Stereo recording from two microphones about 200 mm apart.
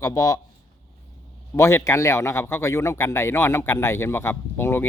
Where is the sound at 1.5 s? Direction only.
15° left (ahead or behind).